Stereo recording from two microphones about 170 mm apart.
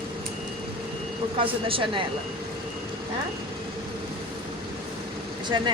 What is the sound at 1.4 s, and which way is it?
Speech, 30° right (ahead or behind).